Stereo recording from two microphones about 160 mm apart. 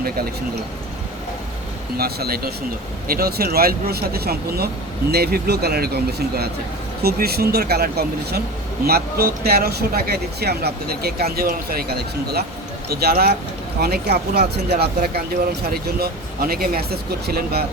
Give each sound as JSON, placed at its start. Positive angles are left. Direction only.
{"t": 2.0, "sound": "speech", "side_deg": -75}
{"t": 15.7, "sound": "speech", "side_deg": -75}